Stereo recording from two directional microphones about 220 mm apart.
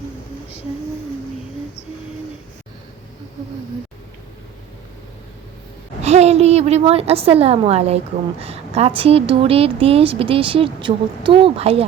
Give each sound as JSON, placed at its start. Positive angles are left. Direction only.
{"t": 6.0, "sound": "a woman's voice", "side_deg": -30}